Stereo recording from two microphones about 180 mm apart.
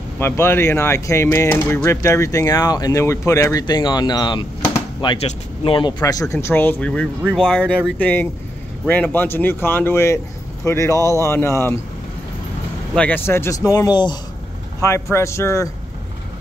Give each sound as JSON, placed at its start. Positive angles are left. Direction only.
{"t": 0.2, "sound": "speech", "side_deg": 15}
{"t": 5.9, "sound": "speech", "side_deg": 20}
{"t": 12.9, "sound": "speech", "side_deg": 10}